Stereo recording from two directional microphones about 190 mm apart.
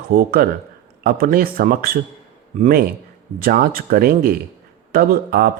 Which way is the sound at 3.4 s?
50° right (ahead or behind).